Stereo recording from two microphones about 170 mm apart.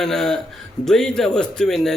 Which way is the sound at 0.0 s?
Centre (ahead or behind).